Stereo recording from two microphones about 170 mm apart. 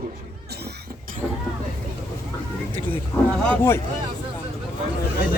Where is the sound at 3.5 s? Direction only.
15° left (ahead or behind).